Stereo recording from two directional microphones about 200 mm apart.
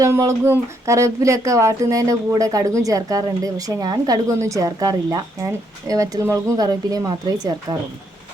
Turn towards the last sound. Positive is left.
turn(degrees=-20)  # may be behind; listen again after turning